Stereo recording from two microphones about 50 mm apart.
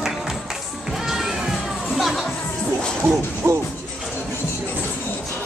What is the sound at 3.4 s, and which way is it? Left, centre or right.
Music, right.